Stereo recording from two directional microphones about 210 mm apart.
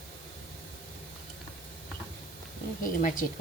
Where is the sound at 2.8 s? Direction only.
40° left (ahead or behind).